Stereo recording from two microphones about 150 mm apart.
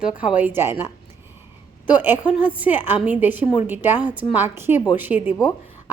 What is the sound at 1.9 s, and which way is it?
A woman's voice, 10° right (ahead or behind).